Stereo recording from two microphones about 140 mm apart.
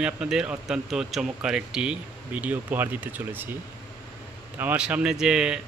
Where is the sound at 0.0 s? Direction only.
5° right (ahead or behind).